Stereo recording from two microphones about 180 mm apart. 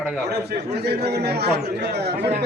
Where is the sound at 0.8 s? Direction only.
65° right (ahead or behind).